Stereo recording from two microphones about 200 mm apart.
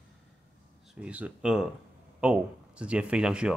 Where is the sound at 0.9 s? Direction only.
5° right (ahead or behind).